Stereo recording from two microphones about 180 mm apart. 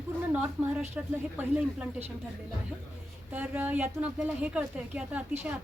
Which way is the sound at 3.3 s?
10° right (ahead or behind).